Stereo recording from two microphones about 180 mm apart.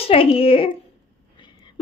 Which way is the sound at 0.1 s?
30° left (ahead or behind).